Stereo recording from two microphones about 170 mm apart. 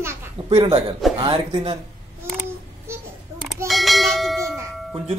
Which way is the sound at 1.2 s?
35° right (ahead or behind).